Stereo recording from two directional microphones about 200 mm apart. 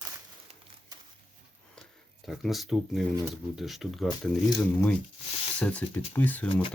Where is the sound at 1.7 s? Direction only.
Centre (ahead or behind).